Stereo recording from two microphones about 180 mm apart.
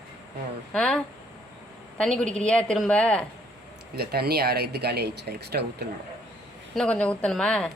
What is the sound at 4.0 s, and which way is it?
Speech, 60° right (ahead or behind).